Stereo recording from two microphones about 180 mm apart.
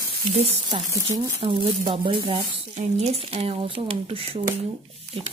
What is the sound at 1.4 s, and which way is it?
Speech, 30° right (ahead or behind).